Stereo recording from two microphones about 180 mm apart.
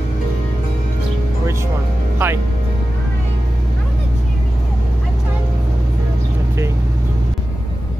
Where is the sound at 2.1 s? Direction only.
10° right (ahead or behind).